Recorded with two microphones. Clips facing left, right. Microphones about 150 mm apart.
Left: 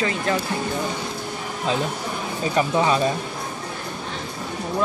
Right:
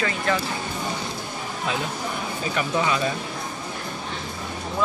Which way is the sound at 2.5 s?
30° left (ahead or behind).